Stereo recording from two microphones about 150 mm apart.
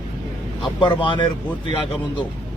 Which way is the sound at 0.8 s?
30° left (ahead or behind).